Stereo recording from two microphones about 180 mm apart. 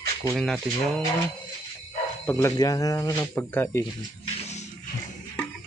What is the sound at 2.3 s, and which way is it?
Speech, 15° left (ahead or behind).